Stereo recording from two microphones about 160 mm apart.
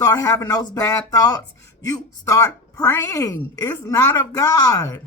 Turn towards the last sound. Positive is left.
turn(degrees=20)  # may be behind; listen again after turning